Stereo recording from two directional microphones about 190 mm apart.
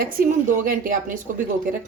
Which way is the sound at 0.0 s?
45° right (ahead or behind).